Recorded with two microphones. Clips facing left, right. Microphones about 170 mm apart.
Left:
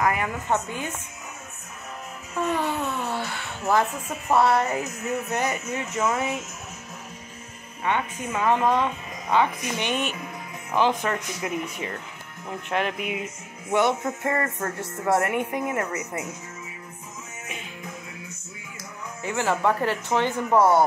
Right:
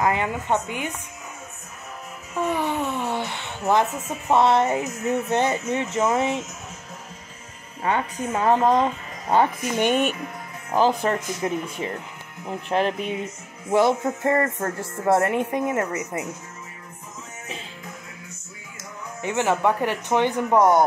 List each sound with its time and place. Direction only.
0.0 s speech: 25° right (ahead or behind)
2.4 s a sound: 15° right (ahead or behind)
4.3 s a woman's voice: 20° right (ahead or behind)
7.8 s speech: 35° right (ahead or behind)
10.7 s a woman's voice: 35° right (ahead or behind)
19.2 s speech: 20° right (ahead or behind)